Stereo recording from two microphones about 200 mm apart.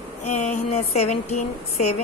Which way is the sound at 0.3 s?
35° left (ahead or behind).